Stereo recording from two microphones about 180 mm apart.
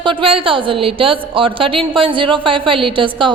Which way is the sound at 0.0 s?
30° right (ahead or behind).